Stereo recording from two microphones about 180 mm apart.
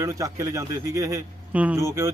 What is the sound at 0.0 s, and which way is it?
A man's voice, 20° right (ahead or behind).